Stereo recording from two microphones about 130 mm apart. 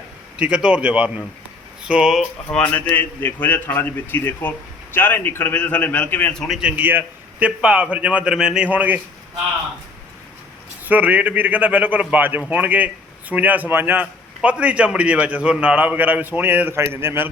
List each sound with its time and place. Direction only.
0.3 s a man's voice: 10° right (ahead or behind)
2.6 s a man's voice: 10° left (ahead or behind)
6.6 s a man's voice: 10° right (ahead or behind)
10.8 s a man's voice: 10° right (ahead or behind)